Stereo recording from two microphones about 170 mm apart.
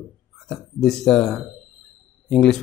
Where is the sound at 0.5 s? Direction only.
Centre (ahead or behind).